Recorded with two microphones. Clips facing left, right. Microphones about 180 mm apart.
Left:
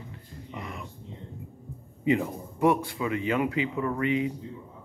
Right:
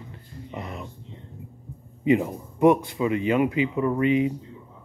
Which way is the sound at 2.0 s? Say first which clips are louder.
Right 4 dB; 20° right (ahead or behind).